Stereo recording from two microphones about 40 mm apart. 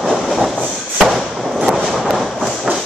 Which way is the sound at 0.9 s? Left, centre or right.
Centre.